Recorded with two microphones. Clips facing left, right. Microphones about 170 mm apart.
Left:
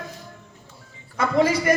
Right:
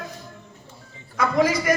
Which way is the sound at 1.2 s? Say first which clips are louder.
Left 1 dB; 25° left (ahead or behind).